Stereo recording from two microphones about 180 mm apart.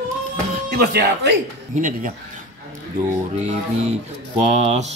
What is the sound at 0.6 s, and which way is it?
Speech, 65° right (ahead or behind).